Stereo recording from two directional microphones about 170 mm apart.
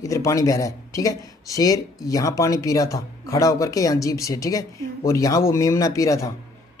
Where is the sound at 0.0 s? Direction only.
20° left (ahead or behind).